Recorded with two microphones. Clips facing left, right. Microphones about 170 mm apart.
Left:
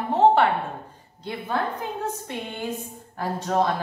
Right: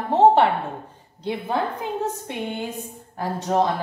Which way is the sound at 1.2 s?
20° right (ahead or behind).